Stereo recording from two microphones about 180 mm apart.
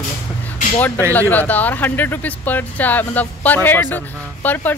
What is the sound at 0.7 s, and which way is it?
Speech, 10° left (ahead or behind).